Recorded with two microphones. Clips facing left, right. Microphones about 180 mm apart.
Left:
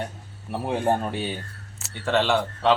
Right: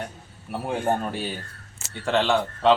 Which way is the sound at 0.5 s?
20° left (ahead or behind).